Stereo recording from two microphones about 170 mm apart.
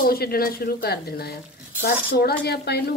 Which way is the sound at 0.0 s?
60° left (ahead or behind).